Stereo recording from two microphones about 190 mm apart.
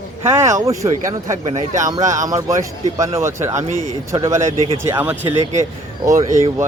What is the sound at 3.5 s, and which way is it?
Speech, 40° right (ahead or behind).